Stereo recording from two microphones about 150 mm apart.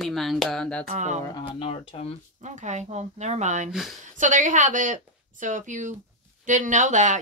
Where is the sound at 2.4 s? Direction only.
50° right (ahead or behind).